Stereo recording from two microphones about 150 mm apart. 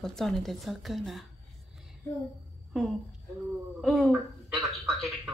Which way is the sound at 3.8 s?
5° left (ahead or behind).